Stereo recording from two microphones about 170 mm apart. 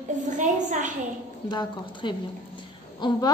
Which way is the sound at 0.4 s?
45° right (ahead or behind).